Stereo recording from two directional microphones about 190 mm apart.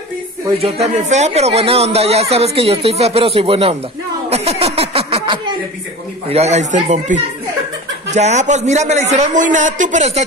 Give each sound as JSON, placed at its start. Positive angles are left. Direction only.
{"t": 0.6, "sound": "speech", "side_deg": -30}